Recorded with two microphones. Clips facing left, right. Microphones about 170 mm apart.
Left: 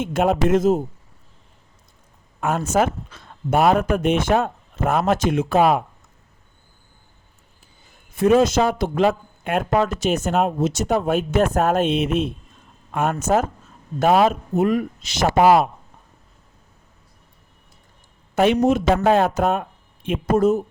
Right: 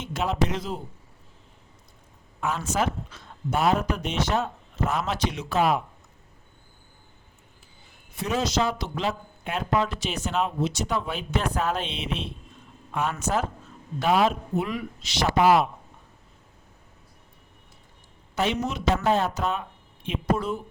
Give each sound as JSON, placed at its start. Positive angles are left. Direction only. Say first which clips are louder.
{"t": 0.0, "sound": "speech", "louder": "left 8 dB", "side_deg": 50}
{"t": 2.4, "sound": "speech", "louder": "left 7 dB", "side_deg": 50}
{"t": 8.1, "sound": "speech", "louder": "left 11 dB", "side_deg": 50}
{"t": 18.3, "sound": "speech", "louder": "left 10 dB", "side_deg": 55}